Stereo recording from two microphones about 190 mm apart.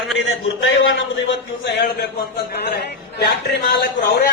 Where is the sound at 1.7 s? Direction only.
60° left (ahead or behind).